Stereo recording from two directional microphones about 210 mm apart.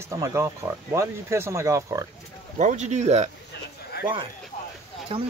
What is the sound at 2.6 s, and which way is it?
Speech, 35° right (ahead or behind).